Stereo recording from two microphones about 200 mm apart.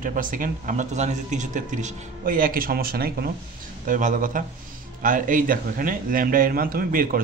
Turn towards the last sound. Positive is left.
turn(degrees=-45)  # may be behind; listen again after turning